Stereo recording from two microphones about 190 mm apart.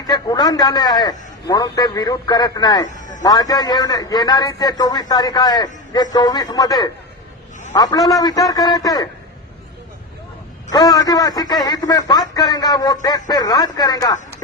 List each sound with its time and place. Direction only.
0.1 s a man's voice: 20° left (ahead or behind)
2.9 s a sound: 40° left (ahead or behind)
3.2 s a man's voice: 20° left (ahead or behind)
10.7 s a man's voice: 20° left (ahead or behind)